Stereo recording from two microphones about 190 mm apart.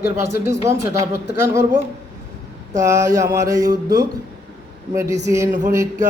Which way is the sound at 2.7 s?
15° right (ahead or behind).